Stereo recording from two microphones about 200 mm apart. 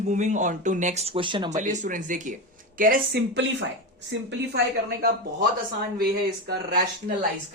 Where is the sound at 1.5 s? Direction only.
40° right (ahead or behind).